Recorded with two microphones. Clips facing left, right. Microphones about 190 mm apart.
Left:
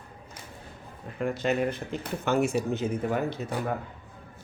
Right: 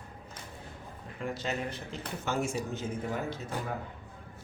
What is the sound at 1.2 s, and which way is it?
Speech, 60° left (ahead or behind).